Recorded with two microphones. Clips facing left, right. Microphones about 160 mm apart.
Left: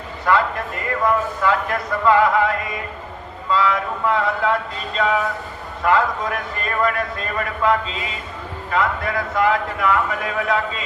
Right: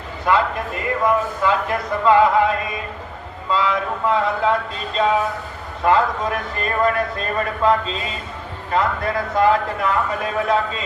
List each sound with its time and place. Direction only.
0.3 s a man's voice: 20° right (ahead or behind)